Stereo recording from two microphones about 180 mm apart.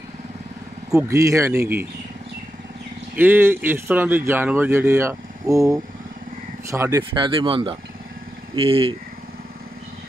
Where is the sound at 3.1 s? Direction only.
10° right (ahead or behind); by 8.9 s 30° right (ahead or behind).